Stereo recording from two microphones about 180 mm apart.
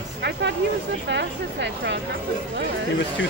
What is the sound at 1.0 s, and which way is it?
Speech, 75° right (ahead or behind).